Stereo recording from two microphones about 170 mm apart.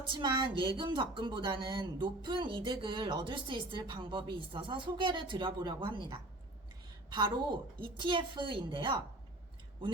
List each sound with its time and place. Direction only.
0.2 s speech: 25° right (ahead or behind)